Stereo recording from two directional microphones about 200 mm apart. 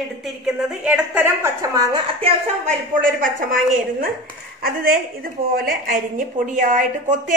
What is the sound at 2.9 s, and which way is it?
A woman's voice, 45° right (ahead or behind).